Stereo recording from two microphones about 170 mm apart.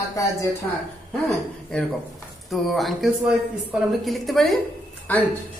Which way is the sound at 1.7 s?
5° left (ahead or behind).